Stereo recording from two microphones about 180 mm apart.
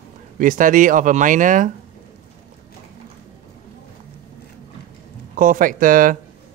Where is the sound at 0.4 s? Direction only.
45° right (ahead or behind).